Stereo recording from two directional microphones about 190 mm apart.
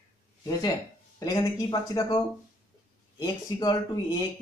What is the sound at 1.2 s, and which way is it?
Speech, 20° left (ahead or behind).